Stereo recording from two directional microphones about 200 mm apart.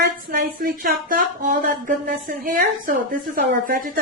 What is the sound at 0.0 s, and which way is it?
Speech, 50° right (ahead or behind).